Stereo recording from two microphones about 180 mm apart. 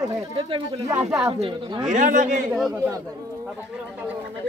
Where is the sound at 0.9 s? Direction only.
15° right (ahead or behind).